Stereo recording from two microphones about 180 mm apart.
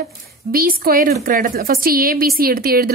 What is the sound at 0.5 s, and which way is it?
A woman's voice, 55° right (ahead or behind).